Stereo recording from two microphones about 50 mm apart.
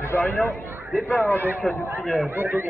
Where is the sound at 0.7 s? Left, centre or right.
Right.